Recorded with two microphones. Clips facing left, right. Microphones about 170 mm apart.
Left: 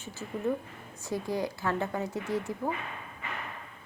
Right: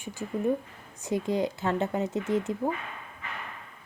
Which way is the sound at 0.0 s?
15° right (ahead or behind).